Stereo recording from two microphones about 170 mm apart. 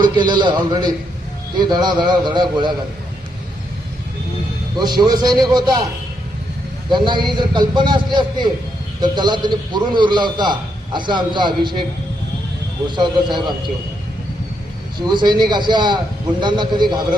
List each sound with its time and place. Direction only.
0.0 s a man's voice: 25° right (ahead or behind)
4.8 s a man's voice: 25° right (ahead or behind)
6.9 s a man's voice: 25° right (ahead or behind)
13.0 s a man's voice: 25° right (ahead or behind)
15.0 s a man's voice: 25° right (ahead or behind)